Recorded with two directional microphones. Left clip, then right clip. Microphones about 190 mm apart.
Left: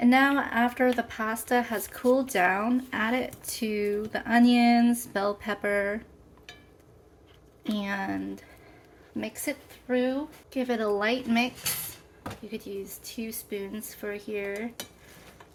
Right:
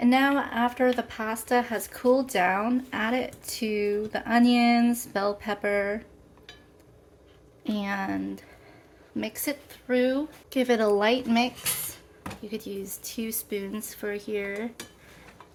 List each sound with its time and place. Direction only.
0.0 s speech: 5° right (ahead or behind)
7.7 s a woman's voice: 10° right (ahead or behind)
9.9 s speech: 30° right (ahead or behind)